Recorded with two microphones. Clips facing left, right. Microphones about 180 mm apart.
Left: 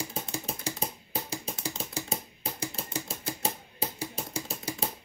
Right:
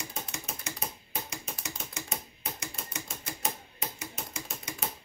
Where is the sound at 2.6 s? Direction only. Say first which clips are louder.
Left 6 dB; 30° left (ahead or behind).